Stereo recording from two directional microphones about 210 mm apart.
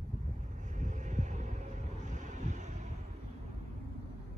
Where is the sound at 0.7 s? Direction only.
35° right (ahead or behind).